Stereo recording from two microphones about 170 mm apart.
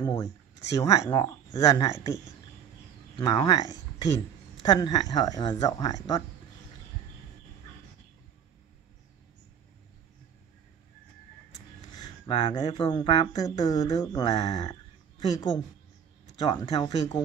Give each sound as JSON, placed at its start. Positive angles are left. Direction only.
{"t": 0.0, "sound": "speech", "side_deg": 25}
{"t": 3.2, "sound": "speech", "side_deg": 25}
{"t": 11.9, "sound": "a sound", "side_deg": 25}
{"t": 12.7, "sound": "speech", "side_deg": 30}